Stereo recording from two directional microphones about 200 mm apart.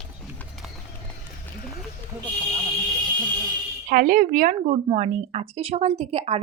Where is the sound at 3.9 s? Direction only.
45° right (ahead or behind).